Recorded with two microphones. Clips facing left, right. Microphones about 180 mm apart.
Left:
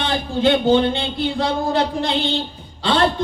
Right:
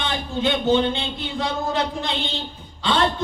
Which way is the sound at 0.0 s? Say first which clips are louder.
Left 5 dB; 35° left (ahead or behind).